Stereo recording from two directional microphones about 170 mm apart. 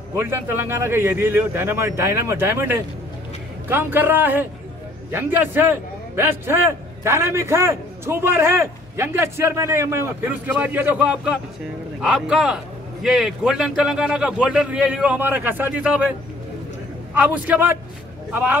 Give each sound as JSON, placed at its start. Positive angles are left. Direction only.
{"t": 0.1, "sound": "a man's voice", "side_deg": -15}
{"t": 17.1, "sound": "a man's voice", "side_deg": -10}